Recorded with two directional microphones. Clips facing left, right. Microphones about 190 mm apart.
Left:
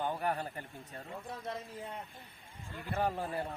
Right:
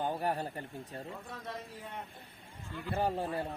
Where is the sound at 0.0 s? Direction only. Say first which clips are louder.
Right 1 dB; 35° right (ahead or behind).